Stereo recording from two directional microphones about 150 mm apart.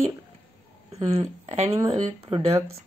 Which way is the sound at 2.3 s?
35° right (ahead or behind).